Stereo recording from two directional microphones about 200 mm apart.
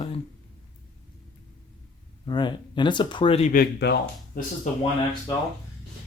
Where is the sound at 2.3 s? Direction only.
20° left (ahead or behind); by 4.5 s 45° left (ahead or behind).